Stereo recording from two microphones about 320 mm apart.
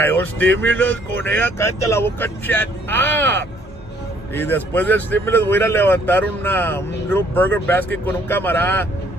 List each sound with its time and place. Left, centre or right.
0.0 s speech: centre